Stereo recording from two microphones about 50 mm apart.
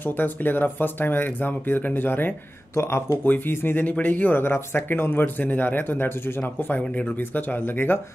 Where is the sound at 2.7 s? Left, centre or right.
Left.